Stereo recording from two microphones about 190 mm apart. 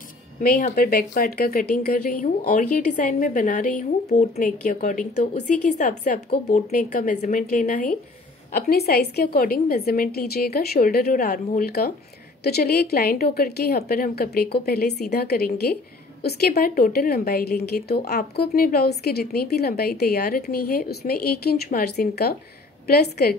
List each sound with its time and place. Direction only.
0.4 s speech: 45° left (ahead or behind)
8.5 s a woman's voice: 55° left (ahead or behind)